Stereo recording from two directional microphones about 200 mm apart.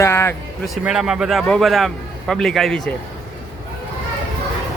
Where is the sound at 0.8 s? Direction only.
5° right (ahead or behind).